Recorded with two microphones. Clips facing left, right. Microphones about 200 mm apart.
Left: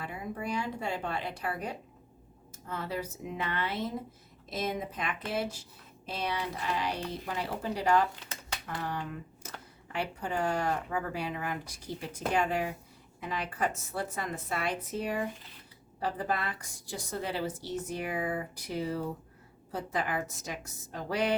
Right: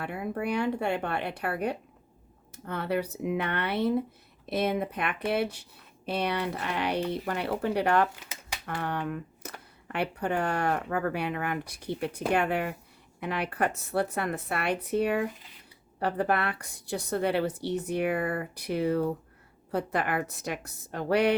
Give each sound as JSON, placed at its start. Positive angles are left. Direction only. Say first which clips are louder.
{"t": 0.0, "sound": "speech", "louder": "right 5 dB", "side_deg": -65}